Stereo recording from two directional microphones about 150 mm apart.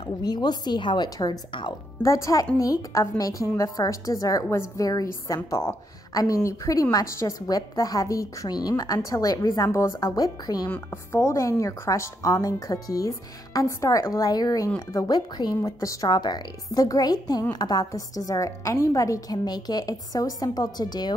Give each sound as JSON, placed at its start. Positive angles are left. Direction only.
{"t": 0.0, "sound": "speech", "side_deg": 30}
{"t": 10.7, "sound": "speech", "side_deg": 15}